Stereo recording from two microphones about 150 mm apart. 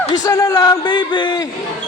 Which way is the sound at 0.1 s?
20° left (ahead or behind).